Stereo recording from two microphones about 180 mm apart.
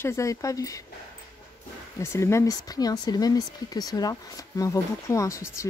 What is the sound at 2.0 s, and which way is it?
Speech, 15° left (ahead or behind).